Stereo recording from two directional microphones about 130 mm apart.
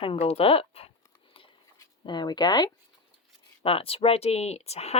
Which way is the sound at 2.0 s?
35° left (ahead or behind).